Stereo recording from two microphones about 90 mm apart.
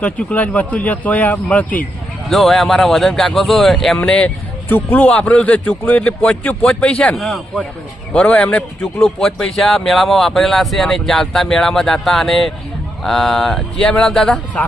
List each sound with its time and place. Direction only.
0.0 s a man's voice: 15° left (ahead or behind)
2.3 s a man's voice: centre (ahead or behind)
7.2 s a man's voice: centre (ahead or behind)
8.1 s a man's voice: 15° left (ahead or behind)